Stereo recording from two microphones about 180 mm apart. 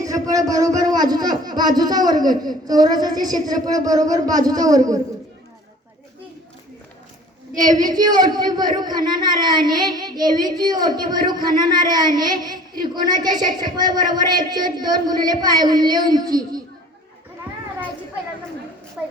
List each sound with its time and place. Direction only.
0.0 s a sound: 20° right (ahead or behind)
0.8 s speech: 20° right (ahead or behind)
7.7 s speech: 45° right (ahead or behind)
7.9 s speech: 20° right (ahead or behind)
19.0 s a child's voice: 10° right (ahead or behind)